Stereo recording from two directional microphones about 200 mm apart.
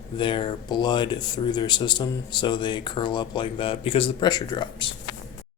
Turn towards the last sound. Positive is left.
turn(degrees=20)  # may be behind; listen again after turning